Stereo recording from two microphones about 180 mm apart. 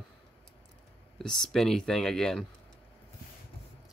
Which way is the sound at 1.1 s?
Centre (ahead or behind).